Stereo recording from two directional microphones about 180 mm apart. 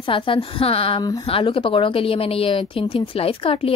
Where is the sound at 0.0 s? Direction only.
30° left (ahead or behind).